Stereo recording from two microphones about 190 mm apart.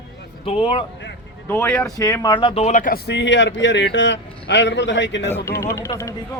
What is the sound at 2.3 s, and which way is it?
Speech, 25° left (ahead or behind).